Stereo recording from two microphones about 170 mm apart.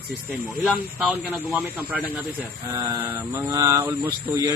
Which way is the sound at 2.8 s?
15° right (ahead or behind).